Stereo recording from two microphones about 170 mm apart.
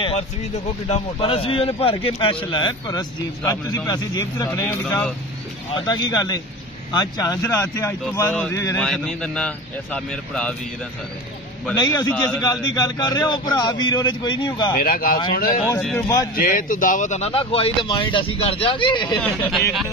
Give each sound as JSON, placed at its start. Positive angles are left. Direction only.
{"t": 0.8, "sound": "a man's voice", "side_deg": 35}
{"t": 4.5, "sound": "speech", "side_deg": 10}
{"t": 5.8, "sound": "a man's voice", "side_deg": 25}
{"t": 8.8, "sound": "a man's voice", "side_deg": 5}
{"t": 11.7, "sound": "a man's voice", "side_deg": 25}
{"t": 14.8, "sound": "speech", "side_deg": 60}
{"t": 15.8, "sound": "a man's voice", "side_deg": 5}
{"t": 16.3, "sound": "speech", "side_deg": 55}
{"t": 19.1, "sound": "a man's voice", "side_deg": 0}